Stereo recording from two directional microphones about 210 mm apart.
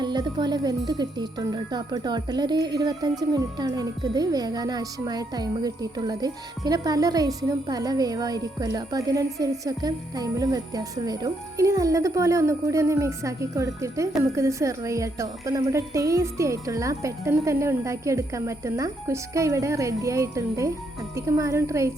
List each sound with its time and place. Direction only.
0.0 s speech: 20° right (ahead or behind)